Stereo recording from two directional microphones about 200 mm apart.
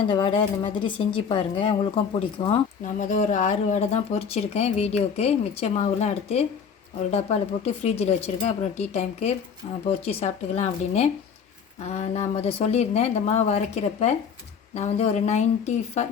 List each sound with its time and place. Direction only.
0.1 s speech: 25° left (ahead or behind)